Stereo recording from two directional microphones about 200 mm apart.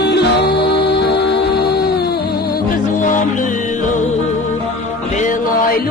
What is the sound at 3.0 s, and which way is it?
Music, 40° left (ahead or behind).